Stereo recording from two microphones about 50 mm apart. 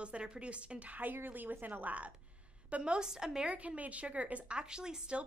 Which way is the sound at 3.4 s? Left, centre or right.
Right.